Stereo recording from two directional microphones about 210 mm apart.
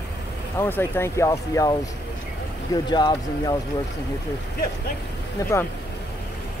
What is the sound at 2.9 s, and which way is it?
Speech, 20° left (ahead or behind).